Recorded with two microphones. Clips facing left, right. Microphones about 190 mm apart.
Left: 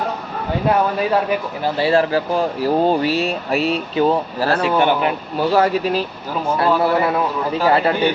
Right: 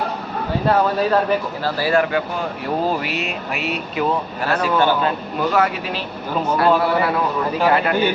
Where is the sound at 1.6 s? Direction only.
25° left (ahead or behind).